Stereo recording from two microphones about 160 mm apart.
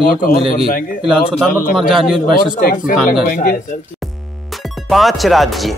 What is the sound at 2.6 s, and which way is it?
Speech, 65° left (ahead or behind).